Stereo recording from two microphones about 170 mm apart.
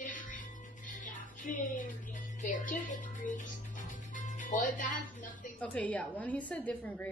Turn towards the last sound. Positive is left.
turn(degrees=10)  # may be behind; listen again after turning